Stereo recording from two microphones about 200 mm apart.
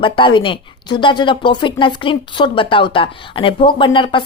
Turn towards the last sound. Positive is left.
turn(degrees=25)  # may be behind; listen again after turning